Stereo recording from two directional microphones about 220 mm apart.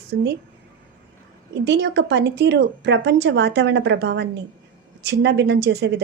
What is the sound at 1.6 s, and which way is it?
Speech, 50° right (ahead or behind).